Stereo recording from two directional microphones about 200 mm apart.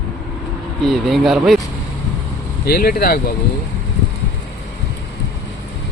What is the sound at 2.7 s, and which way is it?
Speech, 50° left (ahead or behind).